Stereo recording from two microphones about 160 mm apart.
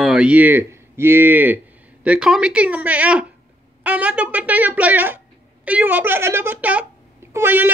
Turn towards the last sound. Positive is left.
turn(degrees=-15)  # may be behind; listen again after turning